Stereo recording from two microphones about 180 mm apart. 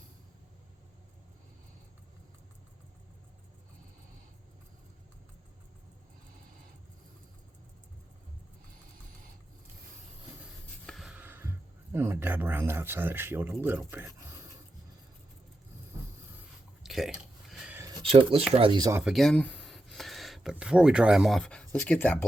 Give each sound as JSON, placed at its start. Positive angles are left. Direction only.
{"t": 10.4, "sound": "writing", "side_deg": 0}
{"t": 11.9, "sound": "speech", "side_deg": -15}
{"t": 16.8, "sound": "a sound", "side_deg": 0}
{"t": 18.0, "sound": "speech", "side_deg": -30}
{"t": 19.0, "sound": "speech", "side_deg": 0}